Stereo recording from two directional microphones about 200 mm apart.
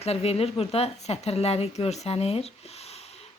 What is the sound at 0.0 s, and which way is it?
Speech, 30° left (ahead or behind).